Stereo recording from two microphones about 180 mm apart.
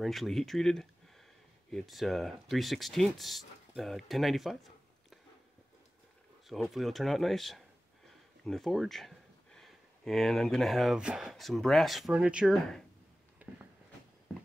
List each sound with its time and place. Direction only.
0.0 s speech: centre (ahead or behind)
6.4 s speech: centre (ahead or behind)
13.4 s a sound: 10° right (ahead or behind)